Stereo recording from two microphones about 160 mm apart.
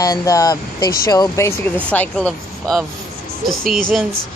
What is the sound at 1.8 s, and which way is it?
Speech, 10° left (ahead or behind).